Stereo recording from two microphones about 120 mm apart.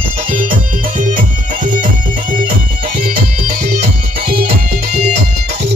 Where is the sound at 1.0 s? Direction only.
90° right.